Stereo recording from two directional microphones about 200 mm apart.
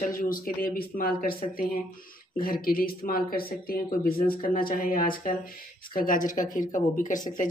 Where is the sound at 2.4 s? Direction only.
45° left (ahead or behind).